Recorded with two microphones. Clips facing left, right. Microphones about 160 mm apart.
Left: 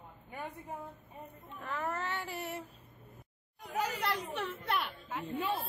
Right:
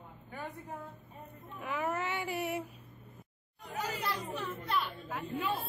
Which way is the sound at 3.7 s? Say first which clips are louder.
Left 2 dB; 75° left (ahead or behind).